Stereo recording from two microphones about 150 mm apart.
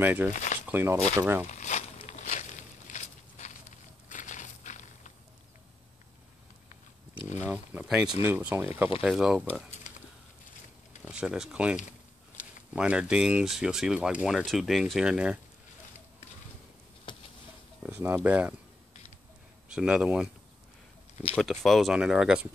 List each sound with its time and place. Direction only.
0.0 s speech: 15° right (ahead or behind)
0.3 s speech: 55° left (ahead or behind)
0.7 s speech: 15° right (ahead or behind)
1.5 s a sound: 50° left (ahead or behind)
7.4 s a sound: 10° right (ahead or behind)
8.2 s speech: 15° right (ahead or behind)
9.0 s speech: 5° right (ahead or behind)
11.1 s speech: 5° right (ahead or behind)
17.1 s a sound: 30° left (ahead or behind)
17.8 s speech: 15° right (ahead or behind)
19.7 s speech: 5° right (ahead or behind)
21.4 s speech: centre (ahead or behind)